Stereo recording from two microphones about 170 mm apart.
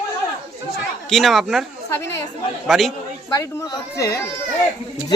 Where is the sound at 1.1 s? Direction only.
Centre (ahead or behind).